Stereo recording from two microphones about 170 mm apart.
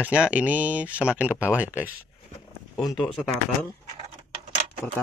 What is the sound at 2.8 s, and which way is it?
Speech, centre (ahead or behind).